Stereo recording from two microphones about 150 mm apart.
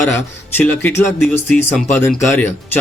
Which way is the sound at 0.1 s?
15° left (ahead or behind).